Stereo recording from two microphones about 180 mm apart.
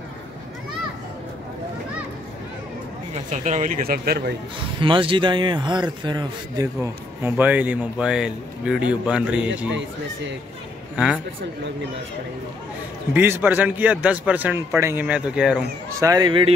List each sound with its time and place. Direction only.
3.3 s a man's voice: 40° right (ahead or behind); by 4.4 s 60° right (ahead or behind)
4.7 s a man's voice: 30° right (ahead or behind); by 9.5 s 5° right (ahead or behind)
13.1 s a man's voice: 10° right (ahead or behind)
15.9 s a man's voice: 20° right (ahead or behind)